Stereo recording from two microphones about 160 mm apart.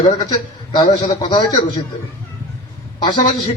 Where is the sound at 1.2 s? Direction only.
30° left (ahead or behind).